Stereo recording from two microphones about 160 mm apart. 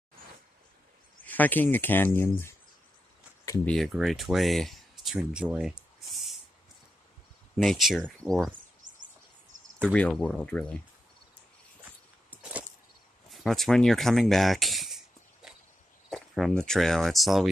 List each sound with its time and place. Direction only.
1.2 s speech: 10° left (ahead or behind)
3.6 s speech: centre (ahead or behind)
7.5 s speech: centre (ahead or behind)
8.8 s a sound: 55° right (ahead or behind)
9.5 s cricket: 55° right (ahead or behind)
9.9 s speech: 10° left (ahead or behind)
13.3 s a sound: centre (ahead or behind)
16.1 s speech: centre (ahead or behind)